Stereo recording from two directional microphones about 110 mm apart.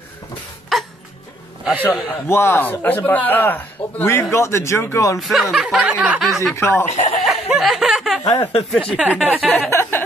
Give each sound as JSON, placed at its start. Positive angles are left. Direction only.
{"t": 0.7, "sound": "music", "side_deg": 0}
{"t": 1.8, "sound": "speech", "side_deg": 25}
{"t": 5.2, "sound": "speech", "side_deg": 0}
{"t": 6.5, "sound": "speech", "side_deg": 20}
{"t": 6.9, "sound": "speech", "side_deg": 80}
{"t": 7.2, "sound": "a sound", "side_deg": 0}
{"t": 8.2, "sound": "speech", "side_deg": 30}
{"t": 8.9, "sound": "speech", "side_deg": -15}
{"t": 9.7, "sound": "a sound", "side_deg": 20}